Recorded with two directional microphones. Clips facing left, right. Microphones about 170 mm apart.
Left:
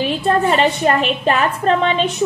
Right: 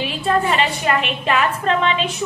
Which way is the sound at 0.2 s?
35° left (ahead or behind).